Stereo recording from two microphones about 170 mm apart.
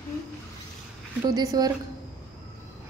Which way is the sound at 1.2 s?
20° right (ahead or behind).